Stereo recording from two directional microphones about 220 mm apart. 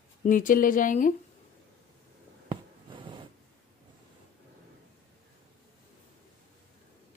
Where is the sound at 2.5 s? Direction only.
25° right (ahead or behind).